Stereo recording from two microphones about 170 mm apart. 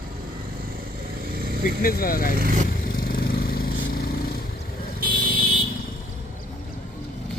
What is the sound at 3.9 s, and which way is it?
Vehicle, 65° left (ahead or behind).